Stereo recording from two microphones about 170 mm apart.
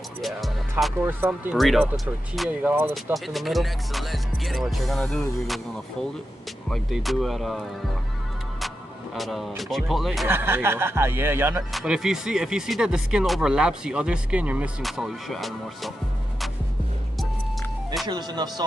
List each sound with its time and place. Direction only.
0.2 s music: centre (ahead or behind)
1.0 s speech: 10° right (ahead or behind)
1.6 s speech: centre (ahead or behind)
6.7 s speech: centre (ahead or behind)
8.5 s music: centre (ahead or behind)
9.6 s speech: centre (ahead or behind)
10.2 s speech: 15° right (ahead or behind)
18.0 s speech: 25° right (ahead or behind)